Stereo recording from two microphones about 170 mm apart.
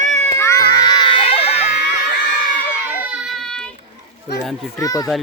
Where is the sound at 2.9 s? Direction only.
10° right (ahead or behind).